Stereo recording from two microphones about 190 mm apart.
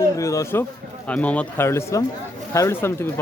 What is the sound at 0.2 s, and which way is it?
Speech, 15° left (ahead or behind).